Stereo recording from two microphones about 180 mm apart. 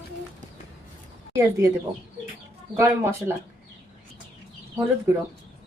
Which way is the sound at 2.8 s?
15° right (ahead or behind).